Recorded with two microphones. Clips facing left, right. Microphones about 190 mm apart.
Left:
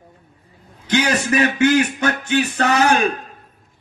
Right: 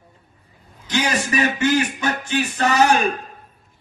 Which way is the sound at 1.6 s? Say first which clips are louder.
Left 4 dB; 60° left (ahead or behind).